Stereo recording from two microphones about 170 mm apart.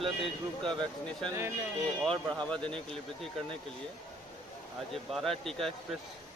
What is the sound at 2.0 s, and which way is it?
Speech, 5° left (ahead or behind).